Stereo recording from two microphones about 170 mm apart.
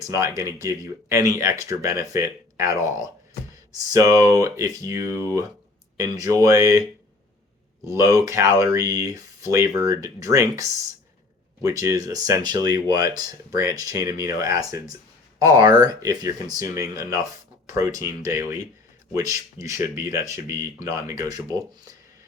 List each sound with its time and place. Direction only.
0.0 s speech: 15° right (ahead or behind)
3.9 s speech: 20° right (ahead or behind)
7.9 s speech: 20° right (ahead or behind)
11.8 s speech: 20° right (ahead or behind)
19.1 s speech: 20° right (ahead or behind)